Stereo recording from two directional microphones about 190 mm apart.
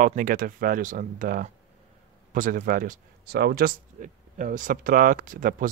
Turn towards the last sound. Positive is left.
turn(degrees=-45)  # may be behind; listen again after turning